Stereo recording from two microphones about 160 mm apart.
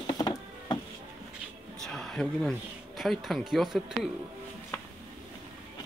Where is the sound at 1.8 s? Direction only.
5° left (ahead or behind).